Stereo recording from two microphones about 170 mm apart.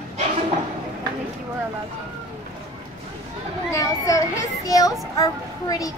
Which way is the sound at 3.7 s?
20° left (ahead or behind).